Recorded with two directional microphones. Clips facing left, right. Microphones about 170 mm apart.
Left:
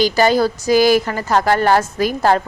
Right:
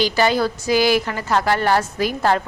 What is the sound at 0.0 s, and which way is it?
A woman's voice, 40° left (ahead or behind).